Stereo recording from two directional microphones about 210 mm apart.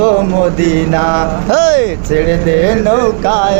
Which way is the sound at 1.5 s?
50° right (ahead or behind).